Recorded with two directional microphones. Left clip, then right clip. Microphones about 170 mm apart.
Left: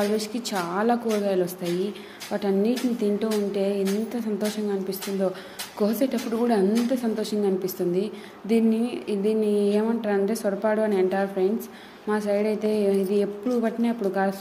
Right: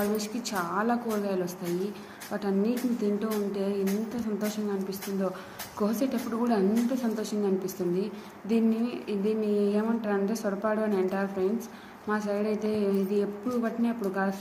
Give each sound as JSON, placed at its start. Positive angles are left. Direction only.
{"t": 0.0, "sound": "a woman's voice", "side_deg": 40}